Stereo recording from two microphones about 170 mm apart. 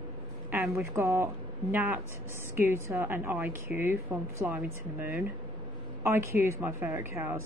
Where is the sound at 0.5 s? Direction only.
15° right (ahead or behind).